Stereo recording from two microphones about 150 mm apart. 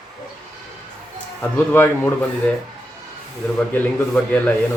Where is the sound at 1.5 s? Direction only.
15° left (ahead or behind).